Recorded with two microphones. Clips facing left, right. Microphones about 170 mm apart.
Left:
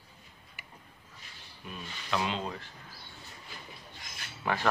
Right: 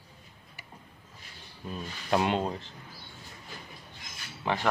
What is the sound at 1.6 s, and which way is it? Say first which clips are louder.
Speech: right 6 dB; 30° right (ahead or behind).